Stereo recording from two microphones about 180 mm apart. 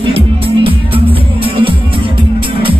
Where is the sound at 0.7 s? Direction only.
30° right (ahead or behind).